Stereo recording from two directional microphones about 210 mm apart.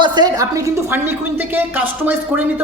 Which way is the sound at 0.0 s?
20° right (ahead or behind).